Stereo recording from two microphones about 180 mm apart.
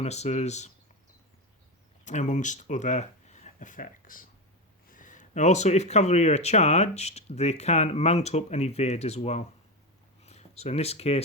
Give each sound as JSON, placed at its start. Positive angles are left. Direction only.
{"t": 0.0, "sound": "speech", "side_deg": 35}
{"t": 2.0, "sound": "speech", "side_deg": 40}